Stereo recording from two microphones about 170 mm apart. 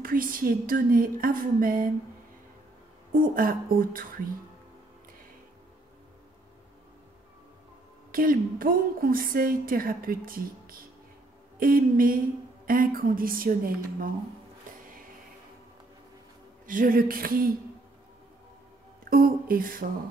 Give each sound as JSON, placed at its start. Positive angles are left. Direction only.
{"t": 0.0, "sound": "a woman's voice", "side_deg": -55}
{"t": 3.1, "sound": "a woman's voice", "side_deg": -55}
{"t": 8.1, "sound": "a woman's voice", "side_deg": -55}
{"t": 16.6, "sound": "a woman's voice", "side_deg": -55}
{"t": 19.0, "sound": "a woman's voice", "side_deg": -60}